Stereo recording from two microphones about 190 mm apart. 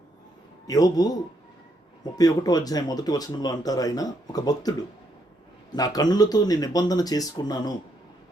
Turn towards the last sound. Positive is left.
turn(degrees=20)  # may be behind; listen again after turning